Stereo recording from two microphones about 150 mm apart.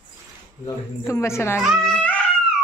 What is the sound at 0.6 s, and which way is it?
A child's voice, 20° left (ahead or behind).